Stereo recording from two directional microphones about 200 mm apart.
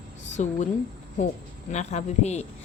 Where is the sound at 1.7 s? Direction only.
35° left (ahead or behind).